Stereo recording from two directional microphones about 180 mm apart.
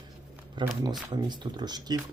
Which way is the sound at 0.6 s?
25° right (ahead or behind).